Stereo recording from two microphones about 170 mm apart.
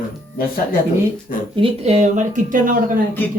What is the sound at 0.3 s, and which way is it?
Speech, 60° left (ahead or behind).